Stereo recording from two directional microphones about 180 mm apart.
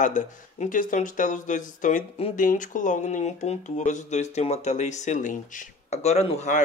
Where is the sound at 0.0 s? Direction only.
45° left (ahead or behind).